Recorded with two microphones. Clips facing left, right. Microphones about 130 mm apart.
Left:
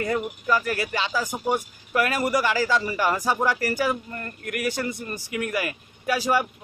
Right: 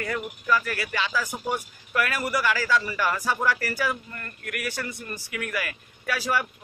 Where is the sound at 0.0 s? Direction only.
25° left (ahead or behind).